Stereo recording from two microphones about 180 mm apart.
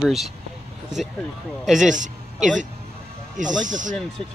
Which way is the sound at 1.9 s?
45° right (ahead or behind).